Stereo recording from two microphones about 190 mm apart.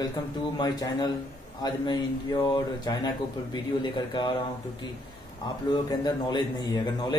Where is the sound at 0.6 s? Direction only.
20° left (ahead or behind).